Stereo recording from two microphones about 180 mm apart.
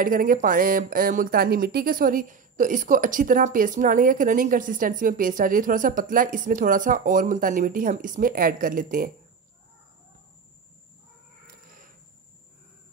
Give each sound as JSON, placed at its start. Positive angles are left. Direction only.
{"t": 0.0, "sound": "speech", "side_deg": -50}